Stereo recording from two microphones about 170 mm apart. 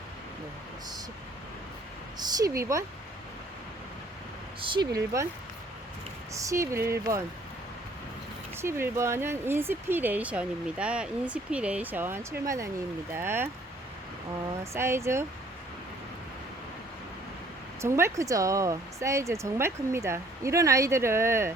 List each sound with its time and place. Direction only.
2.1 s speech: 25° right (ahead or behind)
4.6 s speech: 25° right (ahead or behind)
6.3 s speech: 20° right (ahead or behind)
8.6 s speech: 15° right (ahead or behind)
14.6 s speech: 15° right (ahead or behind)
17.7 s speech: 15° right (ahead or behind)